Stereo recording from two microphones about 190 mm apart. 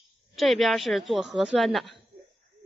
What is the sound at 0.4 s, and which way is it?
Speech, centre (ahead or behind).